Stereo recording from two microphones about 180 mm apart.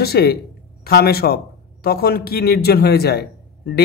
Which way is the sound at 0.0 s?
60° left (ahead or behind).